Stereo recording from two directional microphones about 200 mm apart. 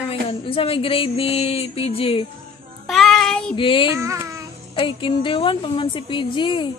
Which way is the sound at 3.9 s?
15° right (ahead or behind).